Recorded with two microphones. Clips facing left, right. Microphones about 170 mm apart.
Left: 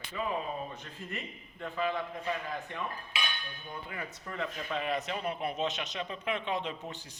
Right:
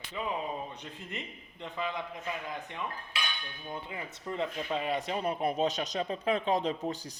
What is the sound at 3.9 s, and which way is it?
A man's voice, 20° right (ahead or behind).